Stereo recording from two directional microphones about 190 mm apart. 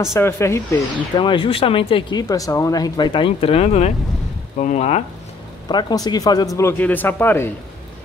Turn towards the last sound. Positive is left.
turn(degrees=10)  # may be behind; listen again after turning